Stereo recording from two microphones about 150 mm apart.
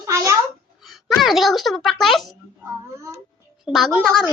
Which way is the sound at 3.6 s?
Centre (ahead or behind).